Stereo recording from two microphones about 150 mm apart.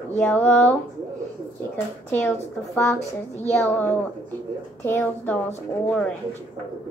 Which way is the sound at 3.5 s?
10° left (ahead or behind).